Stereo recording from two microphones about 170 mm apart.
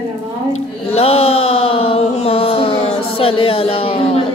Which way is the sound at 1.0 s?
35° left (ahead or behind).